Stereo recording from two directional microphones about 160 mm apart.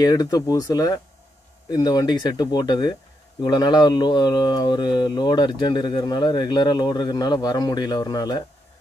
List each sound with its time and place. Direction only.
0.0 s speech: 25° left (ahead or behind)